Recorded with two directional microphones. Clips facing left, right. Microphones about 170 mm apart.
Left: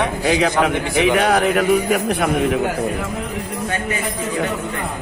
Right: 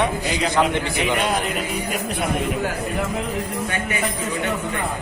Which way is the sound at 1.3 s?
70° left (ahead or behind).